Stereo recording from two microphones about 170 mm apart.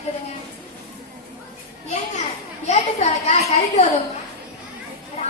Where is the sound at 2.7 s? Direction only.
40° left (ahead or behind).